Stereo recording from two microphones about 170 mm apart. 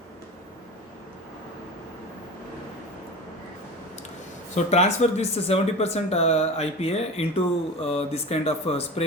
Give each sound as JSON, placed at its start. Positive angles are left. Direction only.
{"t": 4.5, "sound": "speech", "side_deg": 40}